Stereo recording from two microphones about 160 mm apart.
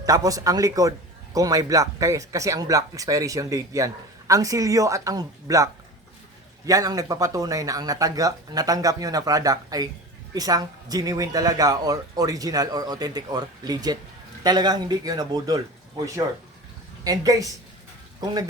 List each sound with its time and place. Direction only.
0.0 s a man's voice: 20° right (ahead or behind)